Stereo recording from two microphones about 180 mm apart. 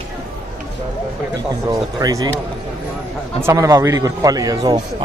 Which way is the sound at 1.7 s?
20° right (ahead or behind).